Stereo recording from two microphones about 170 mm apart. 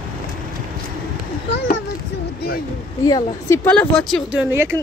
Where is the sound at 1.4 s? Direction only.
90° left.